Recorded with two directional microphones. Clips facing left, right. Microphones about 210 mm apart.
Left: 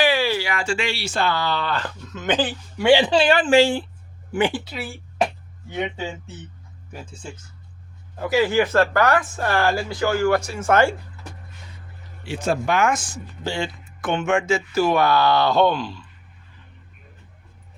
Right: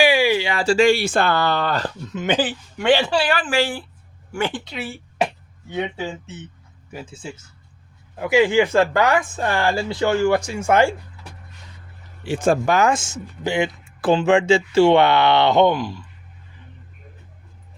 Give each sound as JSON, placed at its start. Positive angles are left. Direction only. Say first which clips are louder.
{"t": 0.0, "sound": "a sound", "louder": "right 3 dB", "side_deg": -15}
{"t": 0.4, "sound": "speech", "louder": "right 9 dB", "side_deg": -35}
{"t": 2.1, "sound": "a man's voice", "louder": "right 1 dB", "side_deg": -10}
{"t": 2.9, "sound": "speech", "louder": "left 2 dB", "side_deg": 20}
{"t": 6.9, "sound": "speech", "louder": "right 3 dB", "side_deg": -5}
{"t": 12.3, "sound": "speech", "louder": "right 4 dB", "side_deg": -50}
{"t": 13.4, "sound": "speech", "louder": "right 5 dB", "side_deg": -20}
{"t": 14.0, "sound": "speech", "louder": "right 5 dB", "side_deg": -30}